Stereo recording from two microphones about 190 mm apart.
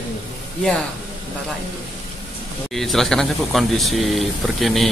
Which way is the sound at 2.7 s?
Centre (ahead or behind).